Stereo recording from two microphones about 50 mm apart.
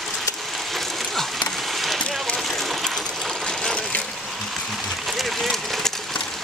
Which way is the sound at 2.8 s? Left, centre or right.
Centre.